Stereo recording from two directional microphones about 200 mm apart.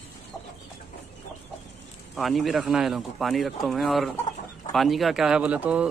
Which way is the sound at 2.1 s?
Centre (ahead or behind).